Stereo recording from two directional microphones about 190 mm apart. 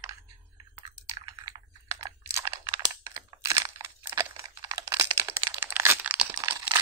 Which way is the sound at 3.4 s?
15° right (ahead or behind).